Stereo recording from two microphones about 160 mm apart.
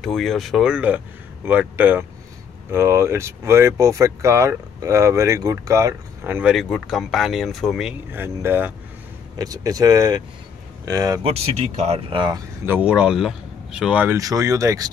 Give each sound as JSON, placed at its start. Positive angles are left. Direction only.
{"t": 0.0, "sound": "speech", "side_deg": 0}
{"t": 6.5, "sound": "speech", "side_deg": 0}
{"t": 8.1, "sound": "speech", "side_deg": -15}
{"t": 11.2, "sound": "speech", "side_deg": -40}
{"t": 12.6, "sound": "speech", "side_deg": -10}
{"t": 14.1, "sound": "speech", "side_deg": -20}